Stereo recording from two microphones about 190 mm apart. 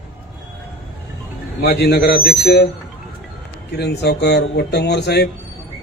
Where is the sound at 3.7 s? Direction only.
60° left (ahead or behind).